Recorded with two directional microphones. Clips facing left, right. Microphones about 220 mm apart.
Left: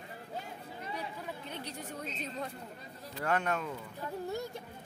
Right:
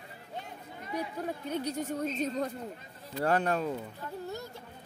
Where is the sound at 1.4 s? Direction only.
45° right (ahead or behind).